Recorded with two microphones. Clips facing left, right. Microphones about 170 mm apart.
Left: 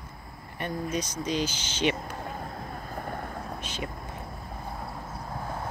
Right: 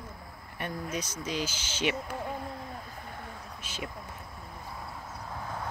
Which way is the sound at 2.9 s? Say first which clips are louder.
Left 8 dB; 50° left (ahead or behind).